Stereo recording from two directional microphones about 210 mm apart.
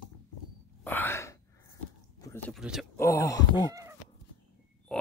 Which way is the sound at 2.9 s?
15° left (ahead or behind).